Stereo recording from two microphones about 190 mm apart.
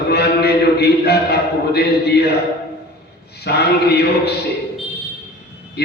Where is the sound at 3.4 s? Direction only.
60° left (ahead or behind).